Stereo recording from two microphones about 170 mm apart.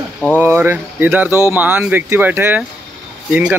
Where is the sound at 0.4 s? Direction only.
10° right (ahead or behind).